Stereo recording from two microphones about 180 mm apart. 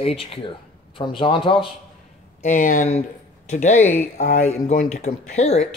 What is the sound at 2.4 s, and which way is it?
Speech, 45° left (ahead or behind).